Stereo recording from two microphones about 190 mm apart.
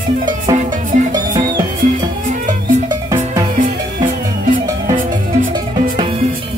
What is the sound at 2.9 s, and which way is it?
Music, 15° right (ahead or behind).